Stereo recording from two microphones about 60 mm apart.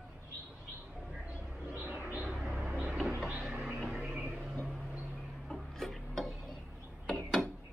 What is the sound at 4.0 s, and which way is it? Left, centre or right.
Music, right.